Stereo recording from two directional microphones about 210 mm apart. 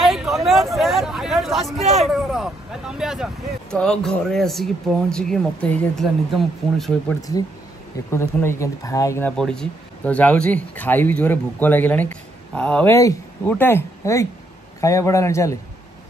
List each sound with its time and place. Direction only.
0.0 s a sound: centre (ahead or behind)
2.3 s vehicle: centre (ahead or behind)
3.7 s speech: 5° left (ahead or behind)
7.2 s speech: 15° left (ahead or behind)
9.4 s speech: 5° left (ahead or behind)